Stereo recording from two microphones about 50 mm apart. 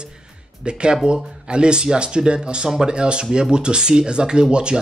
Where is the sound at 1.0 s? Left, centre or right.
Centre.